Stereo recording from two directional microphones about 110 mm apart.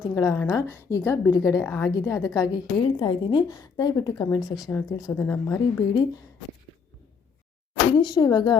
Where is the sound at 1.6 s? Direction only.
10° left (ahead or behind).